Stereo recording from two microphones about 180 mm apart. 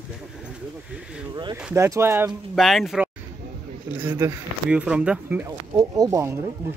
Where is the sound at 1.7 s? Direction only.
15° right (ahead or behind).